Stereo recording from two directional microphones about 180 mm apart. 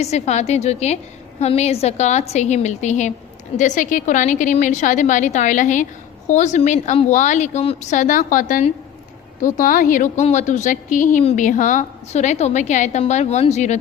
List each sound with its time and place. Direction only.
0.0 s a woman's voice: 40° left (ahead or behind)